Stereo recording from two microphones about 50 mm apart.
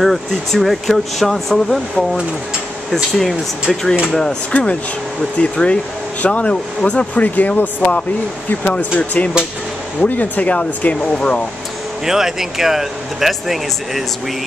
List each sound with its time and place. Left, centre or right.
0.0 s speech: centre
4.5 s speech: left
12.0 s speech: centre